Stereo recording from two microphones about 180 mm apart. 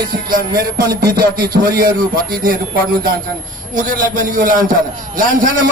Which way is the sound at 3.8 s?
50° right (ahead or behind).